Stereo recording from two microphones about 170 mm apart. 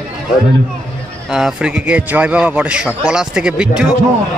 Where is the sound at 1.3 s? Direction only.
5° right (ahead or behind).